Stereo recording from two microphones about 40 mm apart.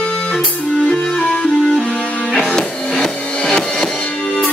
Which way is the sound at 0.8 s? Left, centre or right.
Centre.